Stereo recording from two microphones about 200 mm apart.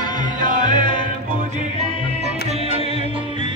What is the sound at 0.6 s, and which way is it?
Music, 25° left (ahead or behind).